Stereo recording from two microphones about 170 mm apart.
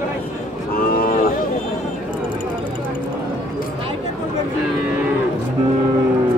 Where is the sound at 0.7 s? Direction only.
60° left (ahead or behind).